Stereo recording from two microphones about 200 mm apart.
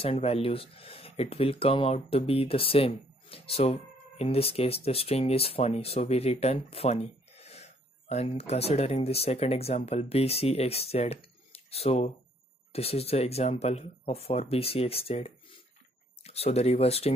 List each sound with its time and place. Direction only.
0.0 s speech: 30° left (ahead or behind)